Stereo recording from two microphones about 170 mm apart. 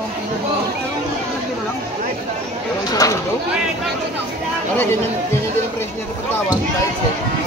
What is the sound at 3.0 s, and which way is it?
Speech, 20° left (ahead or behind).